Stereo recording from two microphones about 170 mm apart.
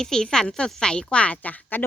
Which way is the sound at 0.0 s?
5° left (ahead or behind).